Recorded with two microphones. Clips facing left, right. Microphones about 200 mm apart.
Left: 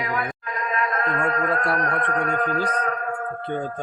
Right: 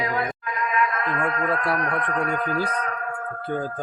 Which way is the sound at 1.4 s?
Centre (ahead or behind).